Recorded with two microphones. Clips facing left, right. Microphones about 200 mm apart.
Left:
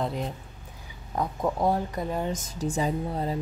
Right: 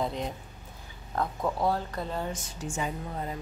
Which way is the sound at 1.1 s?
15° left (ahead or behind).